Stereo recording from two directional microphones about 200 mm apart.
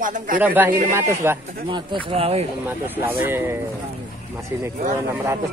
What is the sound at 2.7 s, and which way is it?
Speech, 10° right (ahead or behind).